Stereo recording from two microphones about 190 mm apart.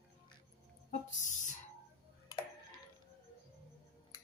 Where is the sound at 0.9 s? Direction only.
40° left (ahead or behind).